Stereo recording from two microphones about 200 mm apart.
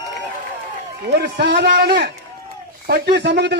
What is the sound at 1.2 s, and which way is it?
A man's voice, 55° right (ahead or behind).